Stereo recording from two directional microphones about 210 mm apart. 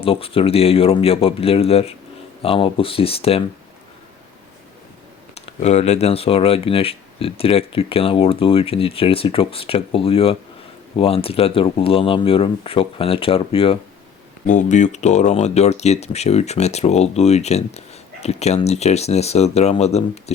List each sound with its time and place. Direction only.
0.0 s speech: 25° left (ahead or behind)
5.3 s speech: 30° left (ahead or behind)
14.4 s speech: 35° left (ahead or behind)